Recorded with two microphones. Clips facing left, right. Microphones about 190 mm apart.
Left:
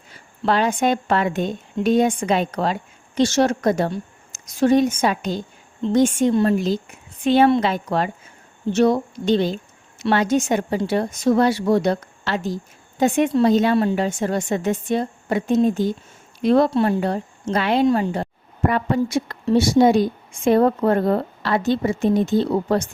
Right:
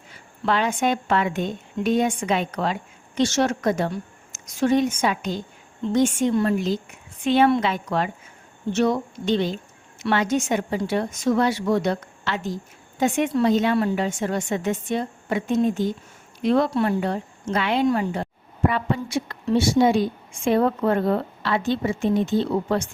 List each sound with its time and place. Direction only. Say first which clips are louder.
0.4 s a woman's voice: left 3 dB; 35° left (ahead or behind)